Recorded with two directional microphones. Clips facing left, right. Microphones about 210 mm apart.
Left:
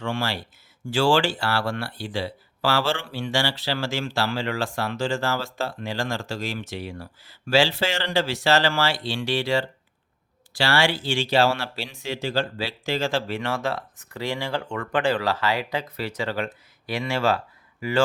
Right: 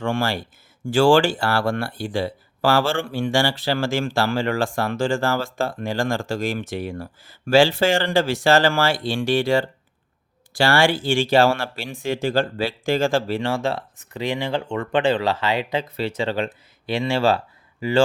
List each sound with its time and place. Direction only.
0.0 s speech: 50° right (ahead or behind); by 18.0 s 30° right (ahead or behind)